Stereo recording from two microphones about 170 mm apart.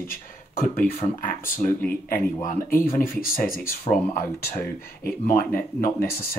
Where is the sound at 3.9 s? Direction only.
35° left (ahead or behind).